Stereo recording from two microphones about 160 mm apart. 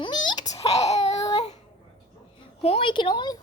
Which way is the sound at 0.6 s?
40° left (ahead or behind).